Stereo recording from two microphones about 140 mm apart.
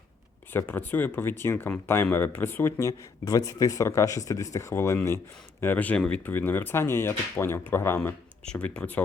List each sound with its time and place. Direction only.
0.5 s speech: 15° left (ahead or behind)